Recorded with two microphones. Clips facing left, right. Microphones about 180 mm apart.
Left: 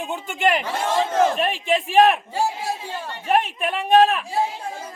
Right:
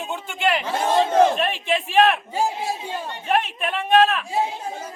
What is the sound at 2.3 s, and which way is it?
Speech, 20° right (ahead or behind).